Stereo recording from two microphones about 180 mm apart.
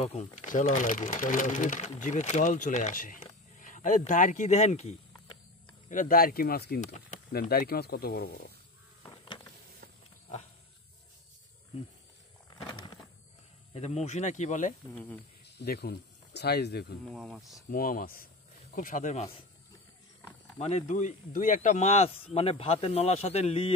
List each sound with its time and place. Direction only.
0.0 s speech: 35° left (ahead or behind)
3.3 s a sound: 45° left (ahead or behind)
5.9 s speech: 50° left (ahead or behind)
6.8 s speech: 40° left (ahead or behind)
7.3 s speech: 60° left (ahead or behind)
12.7 s a sound: 25° left (ahead or behind)
13.7 s speech: 35° left (ahead or behind)
15.0 s speech: 10° left (ahead or behind)
15.6 s speech: 60° left (ahead or behind)
17.0 s speech: centre (ahead or behind)
17.6 s speech: 50° left (ahead or behind)
20.5 s speech: 35° left (ahead or behind)